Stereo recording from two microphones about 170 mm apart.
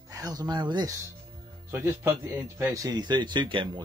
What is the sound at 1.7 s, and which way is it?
Speech, 15° right (ahead or behind).